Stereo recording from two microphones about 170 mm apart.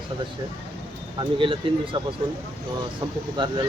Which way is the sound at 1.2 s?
30° right (ahead or behind).